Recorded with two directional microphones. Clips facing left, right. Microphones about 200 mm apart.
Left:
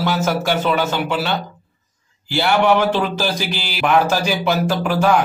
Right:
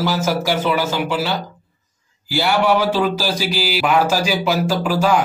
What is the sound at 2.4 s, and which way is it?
Speech, 5° right (ahead or behind).